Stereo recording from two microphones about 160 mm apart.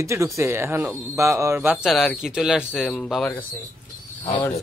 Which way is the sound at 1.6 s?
5° right (ahead or behind).